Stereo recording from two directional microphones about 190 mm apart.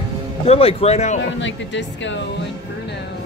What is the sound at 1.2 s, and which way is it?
Speech, 80° left.